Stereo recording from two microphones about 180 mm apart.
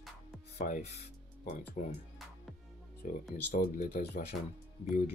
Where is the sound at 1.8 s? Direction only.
40° left (ahead or behind).